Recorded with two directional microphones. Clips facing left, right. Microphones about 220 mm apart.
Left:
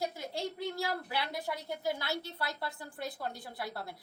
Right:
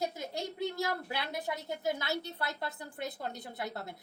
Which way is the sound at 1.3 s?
20° right (ahead or behind).